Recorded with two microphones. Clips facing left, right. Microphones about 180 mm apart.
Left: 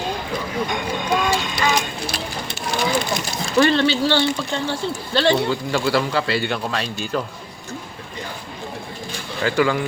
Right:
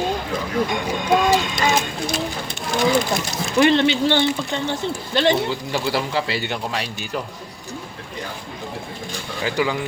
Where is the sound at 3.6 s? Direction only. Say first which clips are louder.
Right 1 dB; 20° right (ahead or behind).